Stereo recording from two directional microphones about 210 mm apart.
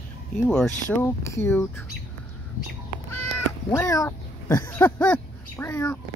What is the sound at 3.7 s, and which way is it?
Speech, 15° left (ahead or behind).